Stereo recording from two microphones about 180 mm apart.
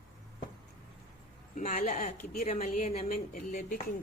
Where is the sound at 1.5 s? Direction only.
45° left (ahead or behind).